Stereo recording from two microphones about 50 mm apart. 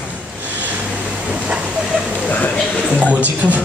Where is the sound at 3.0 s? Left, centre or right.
Right.